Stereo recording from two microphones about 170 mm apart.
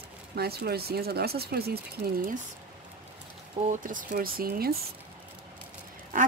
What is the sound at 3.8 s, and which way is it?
Speech, 50° right (ahead or behind).